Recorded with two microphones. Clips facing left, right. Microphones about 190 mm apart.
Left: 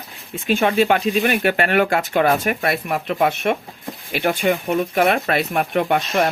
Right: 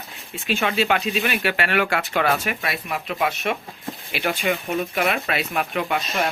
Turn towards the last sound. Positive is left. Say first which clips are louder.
# left 6 dB
turn(degrees=50)  # may be behind; listen again after turning